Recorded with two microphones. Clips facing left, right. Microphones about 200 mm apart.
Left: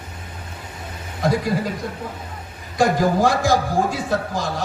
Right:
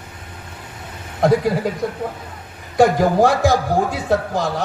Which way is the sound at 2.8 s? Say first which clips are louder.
Right 4 dB; 60° right (ahead or behind).